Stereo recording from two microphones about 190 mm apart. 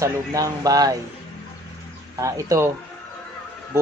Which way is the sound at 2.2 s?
15° right (ahead or behind).